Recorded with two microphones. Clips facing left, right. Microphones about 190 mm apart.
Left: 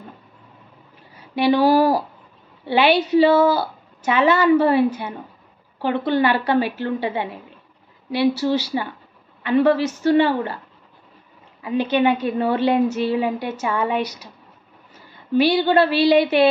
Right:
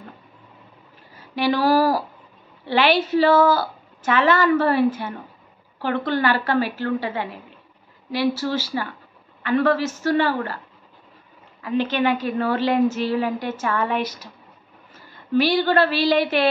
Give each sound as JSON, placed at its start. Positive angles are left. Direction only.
{"t": 1.3, "sound": "a woman's voice", "side_deg": 20}
{"t": 11.6, "sound": "a woman's voice", "side_deg": 15}
{"t": 15.3, "sound": "a woman's voice", "side_deg": 15}